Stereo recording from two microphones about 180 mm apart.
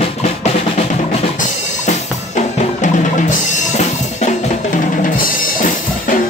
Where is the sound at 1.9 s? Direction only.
40° left (ahead or behind).